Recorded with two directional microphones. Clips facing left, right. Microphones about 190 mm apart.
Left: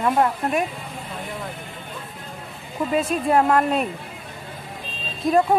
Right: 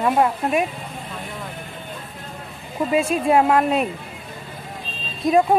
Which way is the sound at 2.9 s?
10° right (ahead or behind).